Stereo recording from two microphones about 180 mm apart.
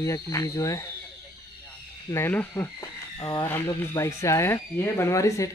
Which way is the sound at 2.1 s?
10° left (ahead or behind).